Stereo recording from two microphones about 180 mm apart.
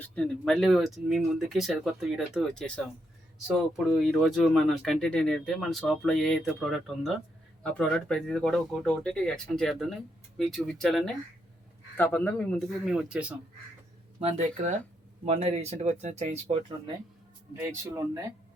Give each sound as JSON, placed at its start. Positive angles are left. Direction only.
{"t": 0.0, "sound": "speech", "side_deg": 5}
{"t": 12.8, "sound": "speech", "side_deg": -5}
{"t": 14.2, "sound": "speech", "side_deg": -40}
{"t": 17.7, "sound": "speech", "side_deg": -15}